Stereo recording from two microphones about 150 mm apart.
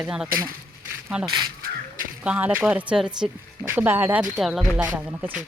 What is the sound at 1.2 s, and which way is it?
Speech, 30° right (ahead or behind).